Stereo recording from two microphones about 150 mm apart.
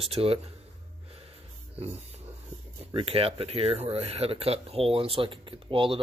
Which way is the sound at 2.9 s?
40° right (ahead or behind).